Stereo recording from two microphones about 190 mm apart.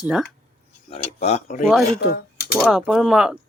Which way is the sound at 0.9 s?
35° left (ahead or behind).